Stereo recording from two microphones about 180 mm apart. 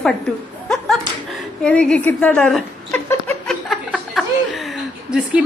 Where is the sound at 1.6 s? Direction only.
5° left (ahead or behind).